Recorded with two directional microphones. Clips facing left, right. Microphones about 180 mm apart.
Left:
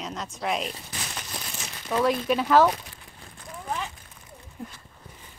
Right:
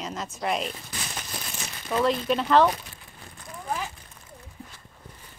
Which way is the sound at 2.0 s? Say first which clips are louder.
Even; 5° left (ahead or behind).